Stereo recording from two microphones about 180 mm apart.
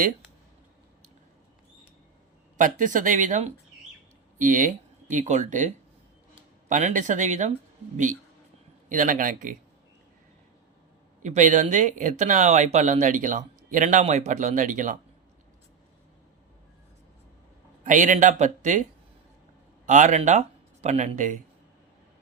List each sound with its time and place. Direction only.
2.6 s speech: 45° right (ahead or behind)
8.9 s speech: 45° right (ahead or behind)
11.2 s speech: 45° right (ahead or behind)
17.8 s speech: 45° right (ahead or behind)